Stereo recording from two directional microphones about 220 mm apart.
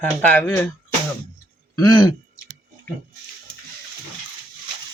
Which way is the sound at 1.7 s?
15° left (ahead or behind).